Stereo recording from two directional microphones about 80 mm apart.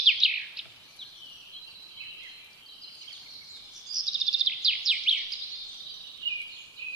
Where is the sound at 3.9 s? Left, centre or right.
Right.